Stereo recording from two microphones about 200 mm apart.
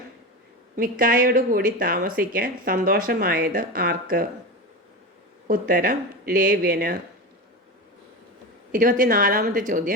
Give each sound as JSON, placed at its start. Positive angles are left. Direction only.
{"t": 0.8, "sound": "speech", "side_deg": -45}
{"t": 5.5, "sound": "speech", "side_deg": -45}
{"t": 8.7, "sound": "a woman's voice", "side_deg": -40}